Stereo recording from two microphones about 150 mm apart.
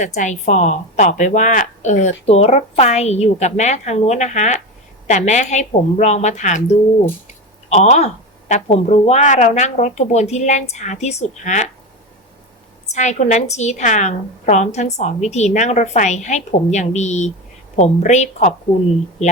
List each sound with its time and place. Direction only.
0.0 s a woman's voice: 55° left (ahead or behind)
12.9 s a woman's voice: 50° left (ahead or behind)